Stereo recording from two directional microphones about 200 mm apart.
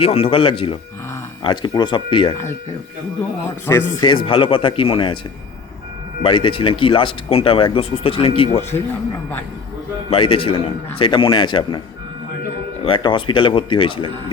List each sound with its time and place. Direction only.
0.0 s speech: 30° left (ahead or behind)
3.7 s speech: 15° left (ahead or behind)
6.2 s speech: 25° left (ahead or behind)
10.1 s speech: 25° left (ahead or behind)
12.8 s speech: 25° left (ahead or behind)